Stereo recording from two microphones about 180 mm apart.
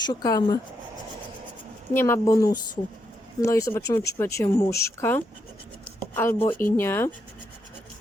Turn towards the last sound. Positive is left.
turn(degrees=15)  # may be behind; listen again after turning